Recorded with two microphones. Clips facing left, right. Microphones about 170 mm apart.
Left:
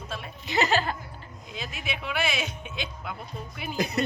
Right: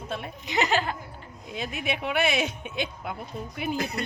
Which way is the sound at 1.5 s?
55° right (ahead or behind).